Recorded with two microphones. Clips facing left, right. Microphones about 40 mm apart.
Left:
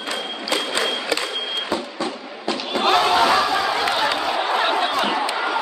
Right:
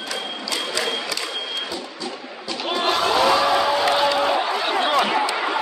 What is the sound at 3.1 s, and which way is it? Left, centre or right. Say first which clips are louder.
Battle cry: left 1 dB; centre.